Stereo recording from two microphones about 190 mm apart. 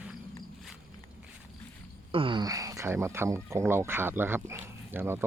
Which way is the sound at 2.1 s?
25° right (ahead or behind).